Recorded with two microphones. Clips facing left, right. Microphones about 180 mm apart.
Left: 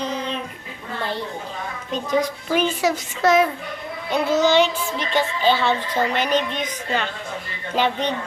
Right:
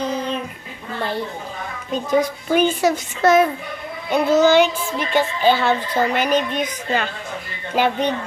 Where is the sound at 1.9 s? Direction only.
5° right (ahead or behind).